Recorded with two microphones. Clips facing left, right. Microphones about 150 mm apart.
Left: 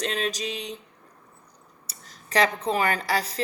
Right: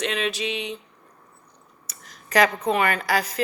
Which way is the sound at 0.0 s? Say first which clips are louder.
Right 2 dB; 40° left (ahead or behind).